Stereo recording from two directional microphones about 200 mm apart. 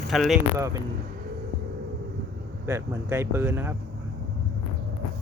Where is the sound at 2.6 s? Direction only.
15° right (ahead or behind).